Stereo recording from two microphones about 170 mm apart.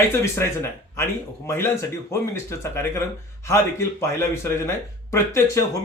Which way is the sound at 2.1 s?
15° left (ahead or behind).